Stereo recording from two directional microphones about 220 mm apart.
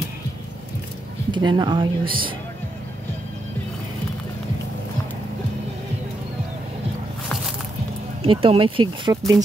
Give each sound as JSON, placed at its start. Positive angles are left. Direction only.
{"t": 1.3, "sound": "speech", "side_deg": -20}
{"t": 8.2, "sound": "speech", "side_deg": -25}